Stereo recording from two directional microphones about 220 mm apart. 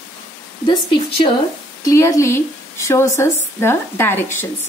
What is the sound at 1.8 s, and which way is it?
Speech, 15° left (ahead or behind).